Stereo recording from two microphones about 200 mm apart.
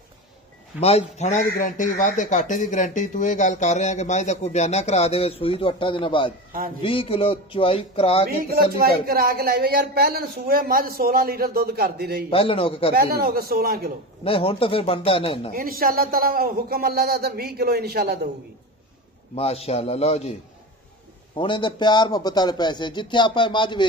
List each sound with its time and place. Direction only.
0.7 s a man's voice: 30° left (ahead or behind)
8.3 s speech: 50° right (ahead or behind)
12.3 s a man's voice: 30° left (ahead or behind)
12.9 s speech: 50° right (ahead or behind)
14.2 s a man's voice: 25° left (ahead or behind)
15.5 s speech: 45° right (ahead or behind)
19.3 s speech: 30° left (ahead or behind)
21.4 s a man's voice: 25° left (ahead or behind)